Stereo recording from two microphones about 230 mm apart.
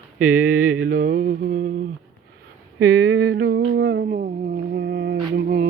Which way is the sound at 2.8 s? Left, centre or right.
Right.